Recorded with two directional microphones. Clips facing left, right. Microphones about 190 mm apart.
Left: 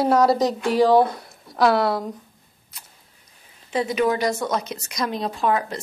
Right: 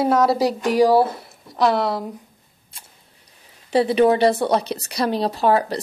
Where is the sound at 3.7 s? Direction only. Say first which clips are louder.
Right 6 dB; 30° right (ahead or behind).